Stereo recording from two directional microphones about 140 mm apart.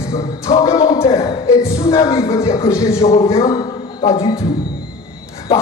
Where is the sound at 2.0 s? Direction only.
25° left (ahead or behind).